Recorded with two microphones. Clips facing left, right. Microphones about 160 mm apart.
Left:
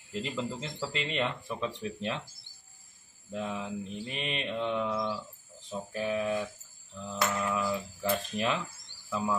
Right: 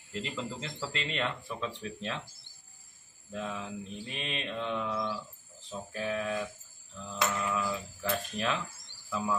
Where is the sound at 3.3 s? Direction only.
10° left (ahead or behind).